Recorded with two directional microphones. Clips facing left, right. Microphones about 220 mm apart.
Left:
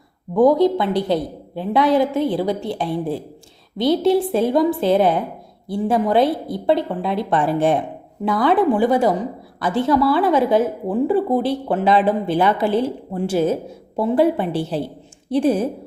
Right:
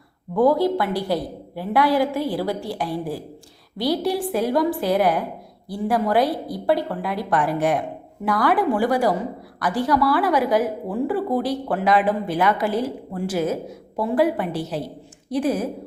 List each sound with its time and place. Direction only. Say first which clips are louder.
0.3 s a woman's voice: left 4 dB; 20° left (ahead or behind)